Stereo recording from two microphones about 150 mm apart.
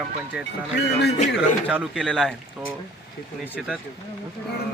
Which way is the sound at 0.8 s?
90° left.